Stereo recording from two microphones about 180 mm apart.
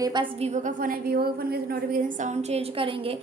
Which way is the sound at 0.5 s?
45° right (ahead or behind).